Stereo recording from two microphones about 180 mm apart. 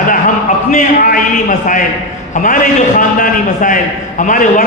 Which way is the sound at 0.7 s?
45° left (ahead or behind).